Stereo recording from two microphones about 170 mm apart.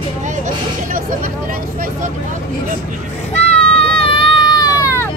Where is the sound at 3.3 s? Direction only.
35° left (ahead or behind); by 5.1 s 15° left (ahead or behind).